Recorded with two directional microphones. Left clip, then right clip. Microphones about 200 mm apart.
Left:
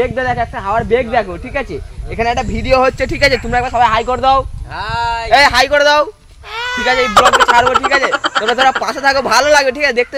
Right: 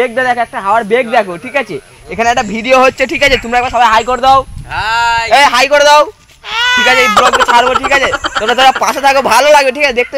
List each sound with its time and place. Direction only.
0.0 s speech: 40° right (ahead or behind)
4.7 s speech: 5° left (ahead or behind)
5.3 s speech: 30° right (ahead or behind)
6.5 s baby cry: 5° left (ahead or behind)
7.0 s speech: centre (ahead or behind)
8.8 s speech: 30° right (ahead or behind)